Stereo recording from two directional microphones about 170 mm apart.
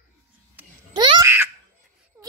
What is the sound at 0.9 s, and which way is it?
Baby laughter, 25° right (ahead or behind).